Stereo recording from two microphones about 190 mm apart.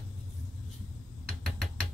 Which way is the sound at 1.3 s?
Centre (ahead or behind).